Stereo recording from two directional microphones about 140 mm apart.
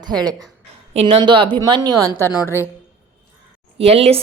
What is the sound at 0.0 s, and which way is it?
A woman's voice, 30° right (ahead or behind).